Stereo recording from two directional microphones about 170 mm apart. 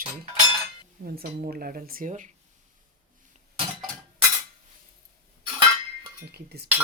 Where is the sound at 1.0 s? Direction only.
60° right (ahead or behind).